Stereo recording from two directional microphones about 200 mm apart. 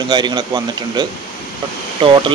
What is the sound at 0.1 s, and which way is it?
Speech, 20° right (ahead or behind).